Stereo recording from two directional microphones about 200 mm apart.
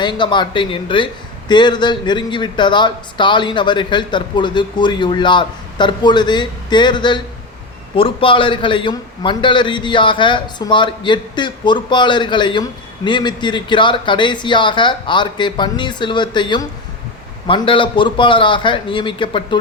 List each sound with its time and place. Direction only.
0.0 s a man's voice: 25° left (ahead or behind)